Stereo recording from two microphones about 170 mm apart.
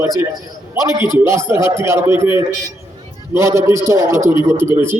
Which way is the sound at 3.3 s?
15° right (ahead or behind).